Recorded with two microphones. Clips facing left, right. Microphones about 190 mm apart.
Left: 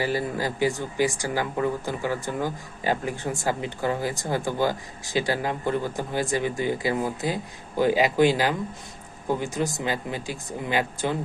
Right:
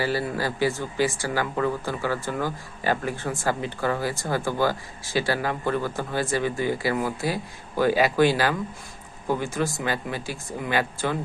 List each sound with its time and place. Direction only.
0.0 s speech: 15° left (ahead or behind)